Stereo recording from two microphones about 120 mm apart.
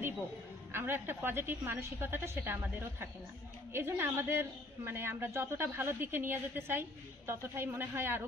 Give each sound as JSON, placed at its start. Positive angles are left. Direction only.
{"t": 0.7, "sound": "a woman's voice", "side_deg": -20}